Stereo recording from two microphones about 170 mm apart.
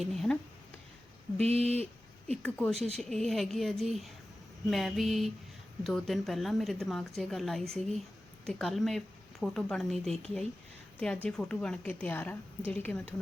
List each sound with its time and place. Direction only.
0.0 s speech: centre (ahead or behind)
1.4 s speech: 40° right (ahead or behind)
2.2 s a woman's voice: 5° left (ahead or behind)